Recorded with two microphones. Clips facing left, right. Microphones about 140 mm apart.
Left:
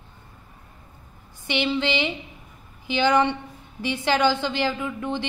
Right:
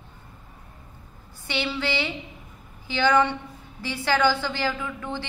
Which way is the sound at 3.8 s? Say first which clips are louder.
Left 1 dB; 20° left (ahead or behind).